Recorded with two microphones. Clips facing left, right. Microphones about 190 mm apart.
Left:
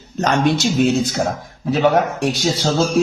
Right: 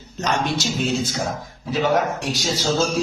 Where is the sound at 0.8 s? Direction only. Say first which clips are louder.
Left 7 dB; 60° left (ahead or behind).